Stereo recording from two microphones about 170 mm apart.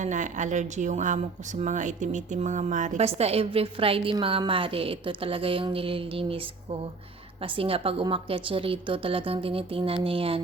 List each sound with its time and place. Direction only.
0.0 s speech: 45° right (ahead or behind)